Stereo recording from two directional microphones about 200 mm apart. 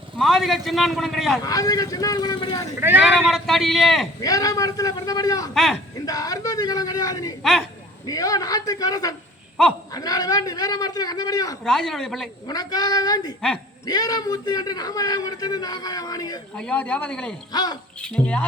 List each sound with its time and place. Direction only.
0.2 s a man's voice: centre (ahead or behind)
1.5 s a man's voice: 20° left (ahead or behind)
2.8 s speech: 10° right (ahead or behind)
3.3 s a man's voice: centre (ahead or behind)
4.2 s a man's voice: 15° left (ahead or behind)
11.6 s a man's voice: 5° left (ahead or behind)
12.5 s a man's voice: 20° left (ahead or behind)
16.6 s a man's voice: 5° left (ahead or behind)
17.5 s a man's voice: 20° left (ahead or behind)
18.0 s a man's voice: 5° left (ahead or behind)